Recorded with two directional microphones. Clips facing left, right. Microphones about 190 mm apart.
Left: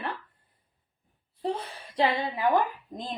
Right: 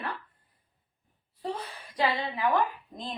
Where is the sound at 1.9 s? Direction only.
25° left (ahead or behind).